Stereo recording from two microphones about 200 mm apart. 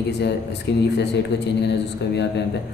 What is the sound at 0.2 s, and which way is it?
Speech, 60° left (ahead or behind).